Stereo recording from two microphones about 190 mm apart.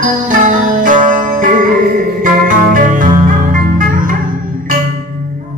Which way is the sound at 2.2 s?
45° right (ahead or behind).